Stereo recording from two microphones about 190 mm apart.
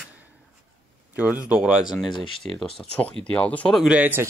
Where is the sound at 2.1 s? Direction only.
25° left (ahead or behind).